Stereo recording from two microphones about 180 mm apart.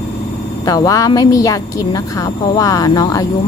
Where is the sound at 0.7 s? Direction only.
20° left (ahead or behind).